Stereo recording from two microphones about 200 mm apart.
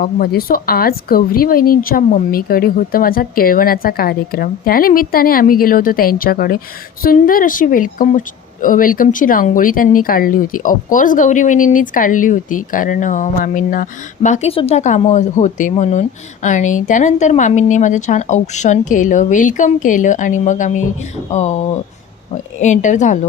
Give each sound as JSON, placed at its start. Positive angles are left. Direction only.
{"t": 0.0, "sound": "speech", "side_deg": 50}